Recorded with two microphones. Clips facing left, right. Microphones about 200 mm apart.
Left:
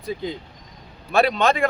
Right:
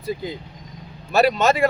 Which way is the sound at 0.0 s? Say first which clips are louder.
Right 1 dB; 5° right (ahead or behind).